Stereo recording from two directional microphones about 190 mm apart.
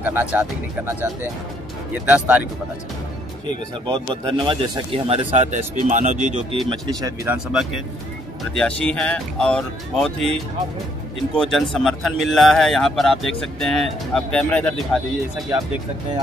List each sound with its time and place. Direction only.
0.0 s speech: 10° right (ahead or behind)
2.0 s speech: 10° right (ahead or behind)
3.8 s speech: 25° right (ahead or behind)
7.0 s speech: 20° right (ahead or behind)
8.5 s speech: 5° left (ahead or behind)